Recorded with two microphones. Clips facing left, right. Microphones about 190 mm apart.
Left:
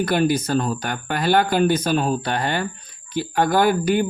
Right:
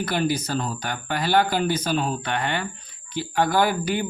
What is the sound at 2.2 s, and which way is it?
Speech, 35° left (ahead or behind).